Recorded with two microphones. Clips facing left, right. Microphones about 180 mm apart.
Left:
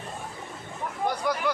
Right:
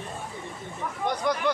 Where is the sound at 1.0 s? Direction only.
5° left (ahead or behind).